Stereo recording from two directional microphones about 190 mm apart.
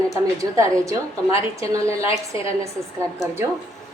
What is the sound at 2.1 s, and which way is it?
Speech, 30° left (ahead or behind).